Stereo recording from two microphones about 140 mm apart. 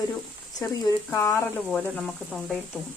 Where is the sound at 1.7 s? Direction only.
5° left (ahead or behind).